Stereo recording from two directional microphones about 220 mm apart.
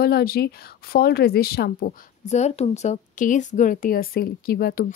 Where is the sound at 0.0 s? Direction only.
45° left (ahead or behind).